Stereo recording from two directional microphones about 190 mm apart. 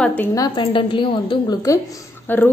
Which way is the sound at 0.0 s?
10° left (ahead or behind).